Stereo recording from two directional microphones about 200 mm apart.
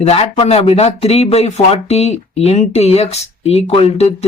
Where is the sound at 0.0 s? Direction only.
30° left (ahead or behind).